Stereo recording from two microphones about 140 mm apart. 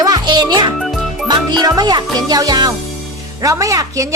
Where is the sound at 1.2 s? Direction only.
30° right (ahead or behind).